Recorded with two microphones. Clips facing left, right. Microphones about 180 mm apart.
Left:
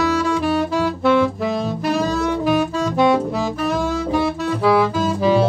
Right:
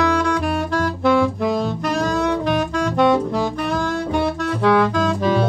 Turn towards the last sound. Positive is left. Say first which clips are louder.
# left 1 dB
turn(degrees=5)  # may be behind; listen again after turning